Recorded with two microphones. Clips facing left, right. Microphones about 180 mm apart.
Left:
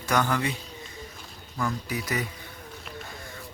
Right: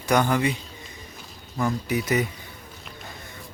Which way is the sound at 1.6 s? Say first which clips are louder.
Right 5 dB; 25° right (ahead or behind).